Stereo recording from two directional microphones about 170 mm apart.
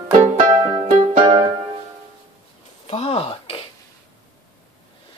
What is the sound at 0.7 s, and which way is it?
Music, 35° right (ahead or behind).